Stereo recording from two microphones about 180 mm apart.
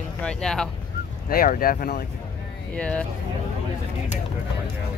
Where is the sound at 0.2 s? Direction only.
5° left (ahead or behind).